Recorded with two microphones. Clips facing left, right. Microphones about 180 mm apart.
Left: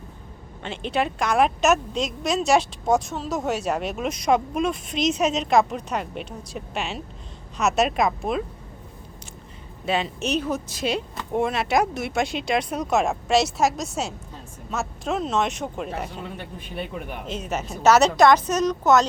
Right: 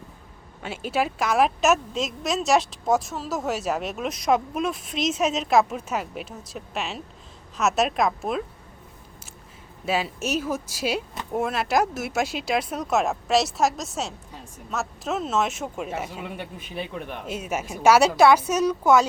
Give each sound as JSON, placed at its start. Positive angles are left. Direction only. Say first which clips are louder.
{"t": 0.6, "sound": "a woman's voice", "louder": "left 1 dB", "side_deg": -5}
{"t": 9.8, "sound": "a woman's voice", "louder": "left 1 dB", "side_deg": -5}
{"t": 17.2, "sound": "a woman's voice", "louder": "even", "side_deg": -10}